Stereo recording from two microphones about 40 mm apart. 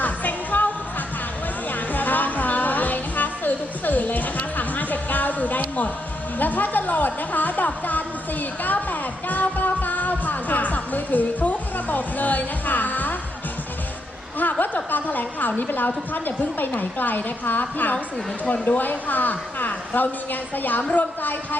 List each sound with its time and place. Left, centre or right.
0.0 s music: left
1.7 s music: left
6.4 s a woman's voice: left
14.3 s a woman's voice: left
18.4 s speech: left
18.8 s a woman's voice: left